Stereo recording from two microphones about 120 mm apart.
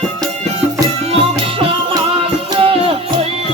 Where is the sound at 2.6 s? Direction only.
50° right (ahead or behind).